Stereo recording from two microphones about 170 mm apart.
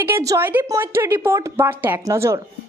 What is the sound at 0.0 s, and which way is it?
A woman's voice, 15° right (ahead or behind).